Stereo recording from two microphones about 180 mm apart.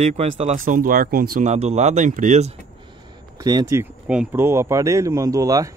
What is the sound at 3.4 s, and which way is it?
Speech, 20° right (ahead or behind).